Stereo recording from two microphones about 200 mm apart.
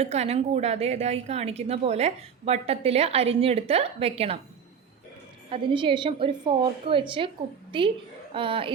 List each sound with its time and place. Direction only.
0.0 s a woman's voice: 30° right (ahead or behind)
5.5 s a woman's voice: 25° right (ahead or behind)